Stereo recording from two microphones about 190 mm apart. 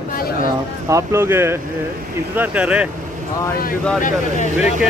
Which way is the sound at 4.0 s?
40° left (ahead or behind).